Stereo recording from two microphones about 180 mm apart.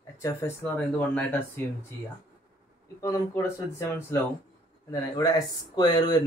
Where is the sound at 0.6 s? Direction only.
5° left (ahead or behind).